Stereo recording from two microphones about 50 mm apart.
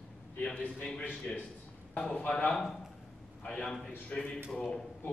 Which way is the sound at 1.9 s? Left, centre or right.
Left.